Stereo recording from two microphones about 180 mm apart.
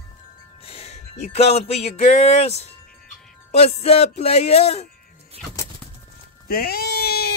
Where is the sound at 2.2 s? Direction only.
35° left (ahead or behind).